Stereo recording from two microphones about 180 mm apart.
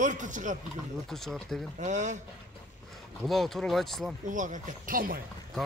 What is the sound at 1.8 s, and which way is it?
Speech, 40° right (ahead or behind).